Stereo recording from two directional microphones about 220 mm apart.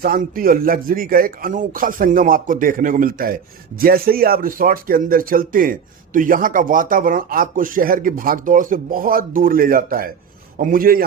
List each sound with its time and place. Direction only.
0.0 s speech: 40° right (ahead or behind)